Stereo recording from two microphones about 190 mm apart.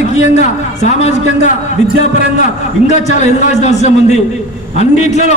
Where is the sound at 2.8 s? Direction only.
40° left (ahead or behind).